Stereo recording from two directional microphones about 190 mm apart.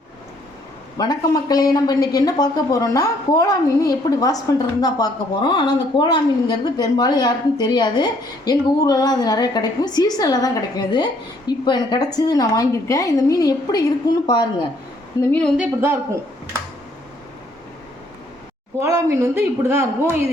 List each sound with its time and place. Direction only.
0.9 s a woman's voice: 20° left (ahead or behind)
15.2 s a woman's voice: 5° left (ahead or behind)
15.5 s speech: 10° right (ahead or behind)
18.8 s speech: 15° right (ahead or behind)